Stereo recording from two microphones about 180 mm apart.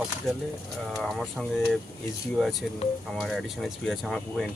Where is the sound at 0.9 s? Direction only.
Centre (ahead or behind).